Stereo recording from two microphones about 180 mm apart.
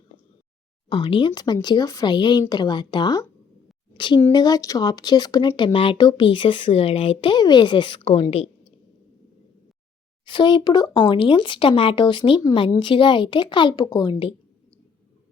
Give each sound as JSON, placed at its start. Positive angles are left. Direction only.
{"t": 0.9, "sound": "a woman's voice", "side_deg": 25}
{"t": 10.2, "sound": "speech", "side_deg": 25}